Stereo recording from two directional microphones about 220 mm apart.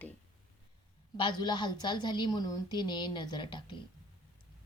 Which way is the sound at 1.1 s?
20° left (ahead or behind).